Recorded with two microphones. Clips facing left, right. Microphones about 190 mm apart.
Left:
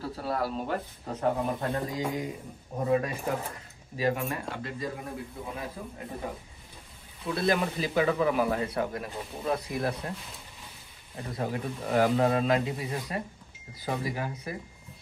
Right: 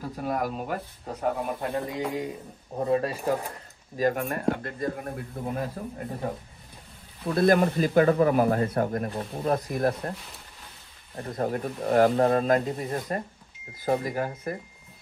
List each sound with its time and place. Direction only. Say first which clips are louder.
0.0 s speech: right 2 dB; 15° right (ahead or behind)
2.8 s speech: right 2 dB; 35° right (ahead or behind)
3.9 s speech: right 3 dB; 50° right (ahead or behind)
7.3 s speech: right 7 dB; 50° right (ahead or behind)
11.1 s speech: right 4 dB; 45° right (ahead or behind)